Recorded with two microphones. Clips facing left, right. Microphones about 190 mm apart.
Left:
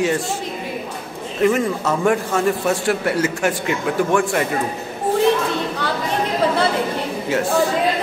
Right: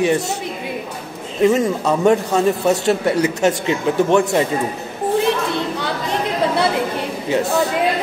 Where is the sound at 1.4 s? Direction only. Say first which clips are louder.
Right 2 dB; 20° right (ahead or behind).